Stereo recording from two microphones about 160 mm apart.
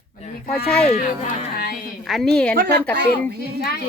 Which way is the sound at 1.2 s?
65° left (ahead or behind).